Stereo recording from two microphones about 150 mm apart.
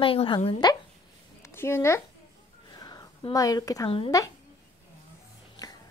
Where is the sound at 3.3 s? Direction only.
25° left (ahead or behind).